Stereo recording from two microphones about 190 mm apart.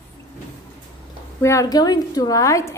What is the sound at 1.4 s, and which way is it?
A woman's voice, 20° left (ahead or behind).